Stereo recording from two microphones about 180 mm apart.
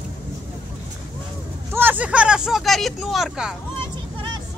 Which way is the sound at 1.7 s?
10° right (ahead or behind).